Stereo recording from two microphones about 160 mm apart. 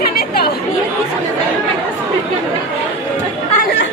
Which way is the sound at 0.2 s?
80° left.